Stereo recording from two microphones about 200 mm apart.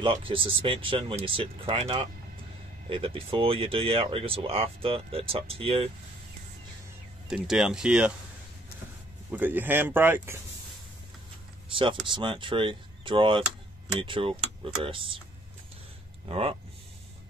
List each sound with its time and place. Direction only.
0.0 s speech: 25° right (ahead or behind)
7.2 s speech: centre (ahead or behind)
9.3 s speech: 10° right (ahead or behind)
12.1 s speech: 25° right (ahead or behind)
16.3 s speech: 30° right (ahead or behind)